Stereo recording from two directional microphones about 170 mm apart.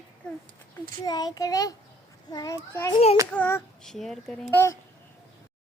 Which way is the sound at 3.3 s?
10° left (ahead or behind).